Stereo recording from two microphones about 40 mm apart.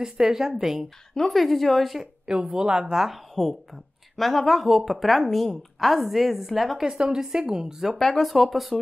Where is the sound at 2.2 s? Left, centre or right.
Right; by 6.9 s centre.